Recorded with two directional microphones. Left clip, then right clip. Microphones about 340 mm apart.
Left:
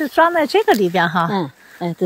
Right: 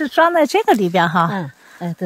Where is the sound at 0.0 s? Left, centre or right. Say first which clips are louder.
Right 1 dB; centre.